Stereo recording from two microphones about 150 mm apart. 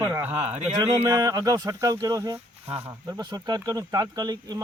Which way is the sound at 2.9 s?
25° right (ahead or behind).